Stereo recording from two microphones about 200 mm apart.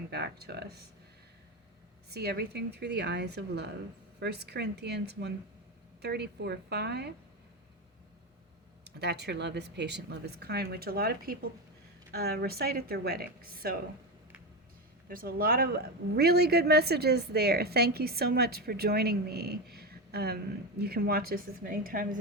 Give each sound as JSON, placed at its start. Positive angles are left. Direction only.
{"t": 0.1, "sound": "a man's voice", "side_deg": -55}
{"t": 2.0, "sound": "speech", "side_deg": -55}
{"t": 8.8, "sound": "a man's voice", "side_deg": -55}
{"t": 15.1, "sound": "a man's voice", "side_deg": -45}